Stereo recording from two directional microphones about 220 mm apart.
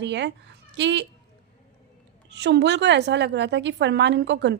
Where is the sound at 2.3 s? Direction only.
50° right (ahead or behind).